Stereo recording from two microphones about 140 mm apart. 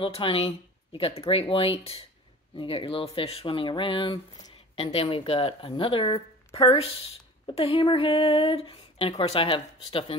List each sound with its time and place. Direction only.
0.0 s speech: 40° left (ahead or behind)